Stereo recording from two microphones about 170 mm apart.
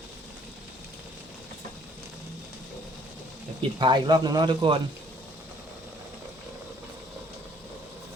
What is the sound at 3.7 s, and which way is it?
Speech, 25° right (ahead or behind).